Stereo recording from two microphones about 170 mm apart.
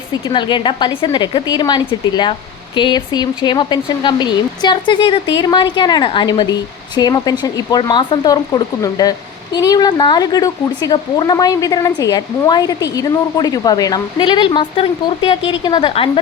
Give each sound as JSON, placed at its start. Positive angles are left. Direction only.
{"t": 0.1, "sound": "speech", "side_deg": 25}